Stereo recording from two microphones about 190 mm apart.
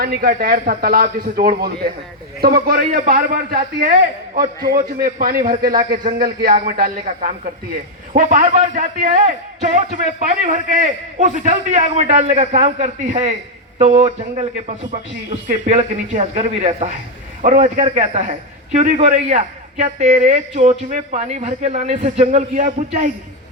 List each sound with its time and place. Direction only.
0.0 s a man's voice: 50° right (ahead or behind)